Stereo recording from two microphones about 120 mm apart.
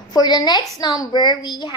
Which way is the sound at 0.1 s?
35° left (ahead or behind).